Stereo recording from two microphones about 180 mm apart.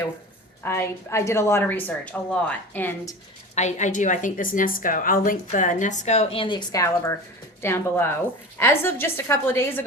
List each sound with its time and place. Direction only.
0.6 s a woman's voice: 15° left (ahead or behind)
3.5 s a woman's voice: 40° left (ahead or behind); by 9.8 s 15° left (ahead or behind)